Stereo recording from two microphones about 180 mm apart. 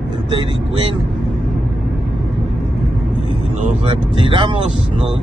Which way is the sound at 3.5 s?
35° right (ahead or behind).